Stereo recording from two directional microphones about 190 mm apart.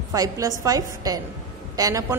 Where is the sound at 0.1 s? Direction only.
20° right (ahead or behind).